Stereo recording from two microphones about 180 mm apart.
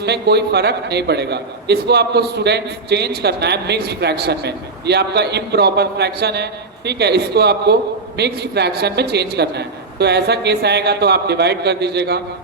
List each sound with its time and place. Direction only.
0.0 s a man's voice: 65° right (ahead or behind)